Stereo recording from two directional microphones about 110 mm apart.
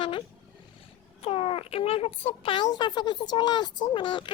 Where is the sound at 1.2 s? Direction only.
60° left (ahead or behind).